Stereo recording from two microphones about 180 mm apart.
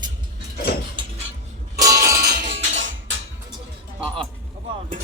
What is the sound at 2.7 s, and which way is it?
Music, 90° right.